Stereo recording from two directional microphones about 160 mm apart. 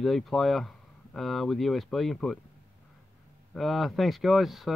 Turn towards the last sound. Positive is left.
turn(degrees=0)  # may be behind; listen again after turning